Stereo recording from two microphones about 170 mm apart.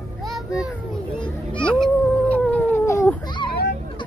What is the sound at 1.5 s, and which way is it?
Baby cry, 5° left (ahead or behind).